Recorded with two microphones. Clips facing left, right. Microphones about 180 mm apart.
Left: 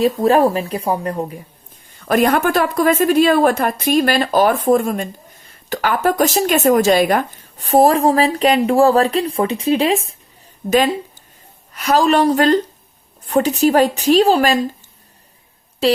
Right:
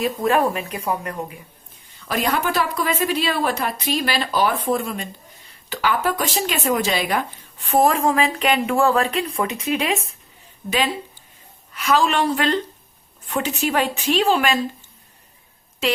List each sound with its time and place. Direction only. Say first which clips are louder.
0.2 s speech: left 6 dB; 35° left (ahead or behind)
2.0 s speech: left 8 dB; 50° left (ahead or behind); by 10.2 s 35° left (ahead or behind)
10.7 s speech: left 8 dB; 45° left (ahead or behind)
15.8 s speech: left 7 dB; 35° left (ahead or behind)